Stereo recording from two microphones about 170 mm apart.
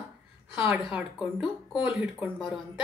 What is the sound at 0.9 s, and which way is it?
Speech, 5° right (ahead or behind).